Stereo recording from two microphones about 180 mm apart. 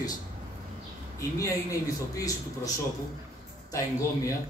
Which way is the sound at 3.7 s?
20° left (ahead or behind).